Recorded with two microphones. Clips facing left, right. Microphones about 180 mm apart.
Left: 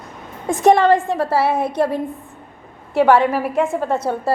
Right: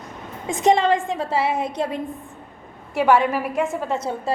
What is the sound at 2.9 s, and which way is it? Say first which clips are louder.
Speech: left 4 dB; 60° left (ahead or behind).